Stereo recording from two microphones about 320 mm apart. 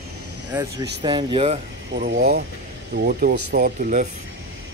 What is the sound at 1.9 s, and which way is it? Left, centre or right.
Speech, right.